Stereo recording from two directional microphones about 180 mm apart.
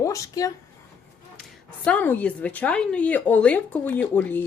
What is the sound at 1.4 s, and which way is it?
A woman's voice, 5° left (ahead or behind).